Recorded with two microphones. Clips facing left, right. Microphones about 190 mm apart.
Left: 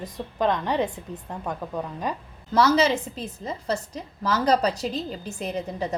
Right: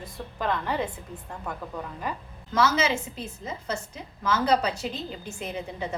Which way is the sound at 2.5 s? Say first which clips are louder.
Left 4 dB; 35° left (ahead or behind).